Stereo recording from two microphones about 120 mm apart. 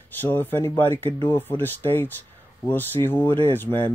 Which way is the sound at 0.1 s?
15° left (ahead or behind).